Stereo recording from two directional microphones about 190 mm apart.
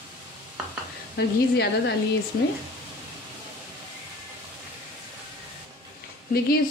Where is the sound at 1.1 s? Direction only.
60° left (ahead or behind).